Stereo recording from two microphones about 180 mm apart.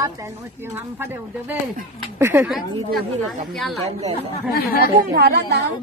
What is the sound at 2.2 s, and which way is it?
Speech, 15° right (ahead or behind).